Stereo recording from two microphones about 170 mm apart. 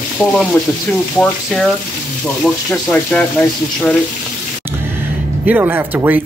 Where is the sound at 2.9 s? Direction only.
5° left (ahead or behind).